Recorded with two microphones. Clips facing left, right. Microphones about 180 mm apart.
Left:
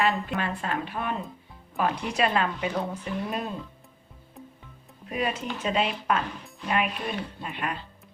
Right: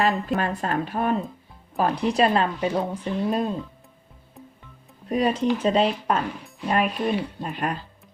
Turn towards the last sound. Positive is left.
turn(degrees=-40)  # may be behind; listen again after turning